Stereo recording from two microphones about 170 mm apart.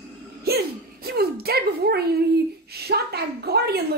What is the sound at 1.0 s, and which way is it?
Speech, 65° right (ahead or behind).